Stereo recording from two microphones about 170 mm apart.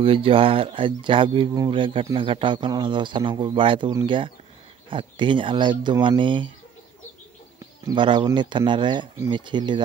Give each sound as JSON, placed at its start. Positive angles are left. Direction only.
{"t": 0.0, "sound": "speech", "side_deg": -35}
{"t": 7.8, "sound": "speech", "side_deg": -25}